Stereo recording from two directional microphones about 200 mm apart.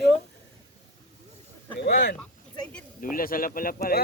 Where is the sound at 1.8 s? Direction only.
55° left (ahead or behind).